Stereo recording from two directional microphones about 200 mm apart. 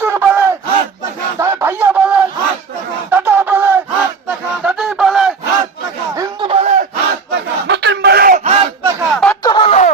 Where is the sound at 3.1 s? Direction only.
10° right (ahead or behind).